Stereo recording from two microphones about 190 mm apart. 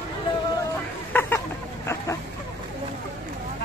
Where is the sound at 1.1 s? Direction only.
10° left (ahead or behind).